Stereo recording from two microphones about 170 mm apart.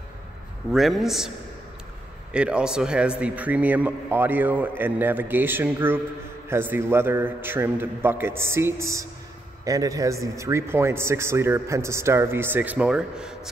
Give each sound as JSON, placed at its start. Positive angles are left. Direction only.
{"t": 0.7, "sound": "a man's voice", "side_deg": 0}
{"t": 2.3, "sound": "speech", "side_deg": -5}